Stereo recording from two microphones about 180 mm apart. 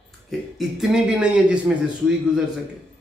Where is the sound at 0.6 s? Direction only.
Centre (ahead or behind).